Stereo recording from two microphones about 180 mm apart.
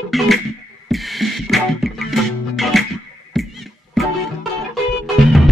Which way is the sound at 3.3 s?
Centre (ahead or behind).